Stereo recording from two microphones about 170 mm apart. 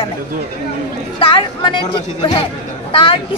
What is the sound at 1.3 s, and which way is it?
A woman's voice, 25° left (ahead or behind).